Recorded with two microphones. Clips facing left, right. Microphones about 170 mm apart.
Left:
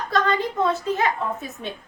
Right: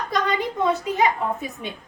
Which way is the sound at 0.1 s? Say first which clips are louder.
Left 3 dB; 15° right (ahead or behind).